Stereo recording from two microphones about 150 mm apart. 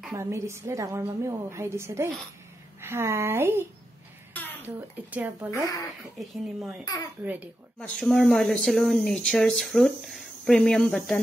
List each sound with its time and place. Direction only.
0.1 s a woman's voice: 20° right (ahead or behind)
4.3 s babbling: 10° left (ahead or behind)
4.6 s a woman's voice: 10° right (ahead or behind)
5.5 s speech: 20° left (ahead or behind)
6.1 s speech: centre (ahead or behind)
7.8 s speech: 5° left (ahead or behind)